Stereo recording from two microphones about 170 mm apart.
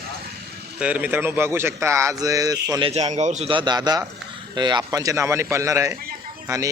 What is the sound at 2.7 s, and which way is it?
Speech, 35° right (ahead or behind).